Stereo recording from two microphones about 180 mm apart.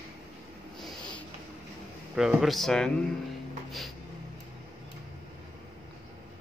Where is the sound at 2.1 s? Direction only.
Centre (ahead or behind).